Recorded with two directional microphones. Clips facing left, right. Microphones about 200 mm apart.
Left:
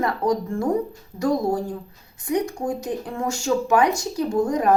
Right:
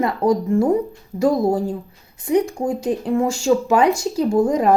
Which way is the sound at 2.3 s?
25° right (ahead or behind).